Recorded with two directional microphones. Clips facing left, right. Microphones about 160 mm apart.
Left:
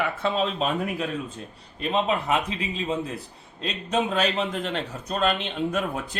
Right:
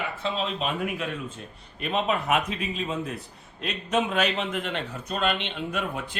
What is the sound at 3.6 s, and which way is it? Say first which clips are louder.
Speech: even; 35° left (ahead or behind).